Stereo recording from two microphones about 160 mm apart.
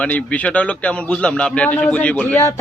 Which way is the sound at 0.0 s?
10° left (ahead or behind).